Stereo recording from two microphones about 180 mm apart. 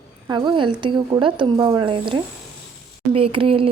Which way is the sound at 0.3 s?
25° right (ahead or behind).